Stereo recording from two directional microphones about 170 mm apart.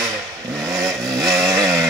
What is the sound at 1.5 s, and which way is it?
Chainsaw, 15° right (ahead or behind).